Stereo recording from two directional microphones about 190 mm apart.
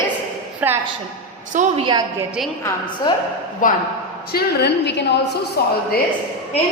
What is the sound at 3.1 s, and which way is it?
Speech, 25° left (ahead or behind).